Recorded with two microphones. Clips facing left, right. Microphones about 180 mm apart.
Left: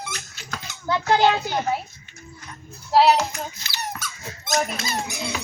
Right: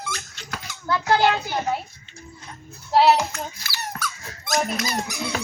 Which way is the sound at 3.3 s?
20° left (ahead or behind).